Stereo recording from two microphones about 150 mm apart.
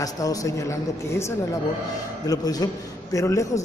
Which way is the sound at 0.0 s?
25° left (ahead or behind).